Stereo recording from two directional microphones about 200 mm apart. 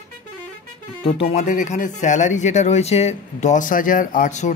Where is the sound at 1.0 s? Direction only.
30° left (ahead or behind).